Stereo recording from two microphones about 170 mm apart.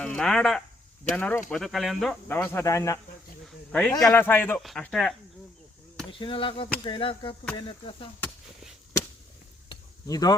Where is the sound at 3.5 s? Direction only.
5° left (ahead or behind).